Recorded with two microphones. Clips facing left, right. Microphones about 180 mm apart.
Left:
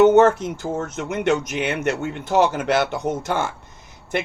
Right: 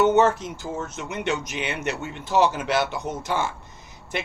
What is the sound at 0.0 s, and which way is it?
Speech, 50° left (ahead or behind).